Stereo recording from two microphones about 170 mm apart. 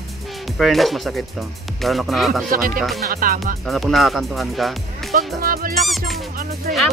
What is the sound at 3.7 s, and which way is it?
Speech, centre (ahead or behind).